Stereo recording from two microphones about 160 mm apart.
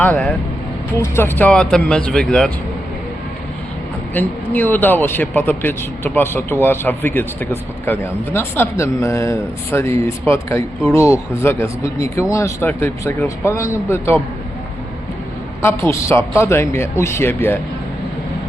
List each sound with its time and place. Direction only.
0.0 s speech: 10° left (ahead or behind)
4.1 s speech: 10° left (ahead or behind)
15.6 s speech: 15° left (ahead or behind)